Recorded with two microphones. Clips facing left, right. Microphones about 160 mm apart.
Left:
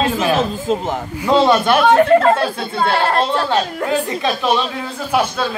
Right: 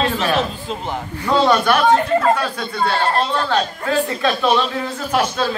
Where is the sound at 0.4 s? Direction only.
45° left (ahead or behind).